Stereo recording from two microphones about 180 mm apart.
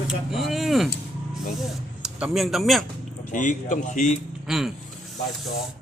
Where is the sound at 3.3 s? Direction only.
45° left (ahead or behind).